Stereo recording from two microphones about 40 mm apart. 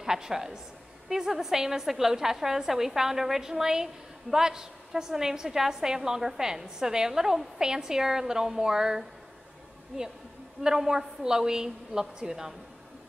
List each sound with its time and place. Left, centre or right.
0.0 s a woman's voice: centre
10.6 s a woman's voice: centre